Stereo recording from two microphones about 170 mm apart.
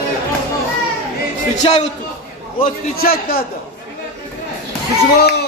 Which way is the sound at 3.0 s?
60° left (ahead or behind).